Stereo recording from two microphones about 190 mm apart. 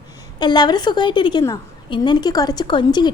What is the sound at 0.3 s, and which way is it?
A woman's voice, 20° left (ahead or behind).